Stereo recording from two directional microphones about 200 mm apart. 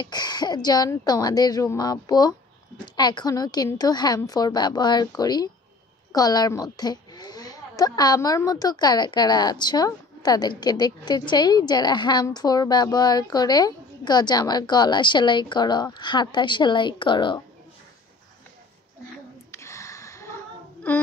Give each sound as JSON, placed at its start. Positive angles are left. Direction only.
{"t": 0.0, "sound": "a woman's voice", "side_deg": 20}
{"t": 19.5, "sound": "a sound", "side_deg": 15}
{"t": 20.9, "sound": "child singing", "side_deg": 5}